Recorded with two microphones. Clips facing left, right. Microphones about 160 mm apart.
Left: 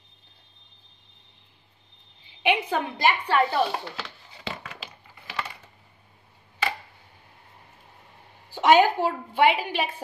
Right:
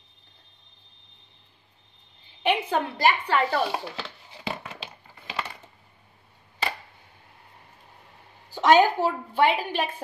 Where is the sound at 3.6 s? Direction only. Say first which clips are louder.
Right 1 dB; centre (ahead or behind).